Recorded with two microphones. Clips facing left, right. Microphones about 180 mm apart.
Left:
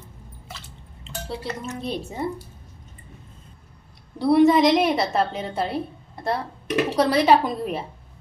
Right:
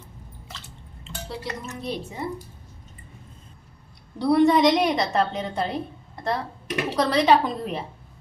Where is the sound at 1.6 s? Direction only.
30° left (ahead or behind).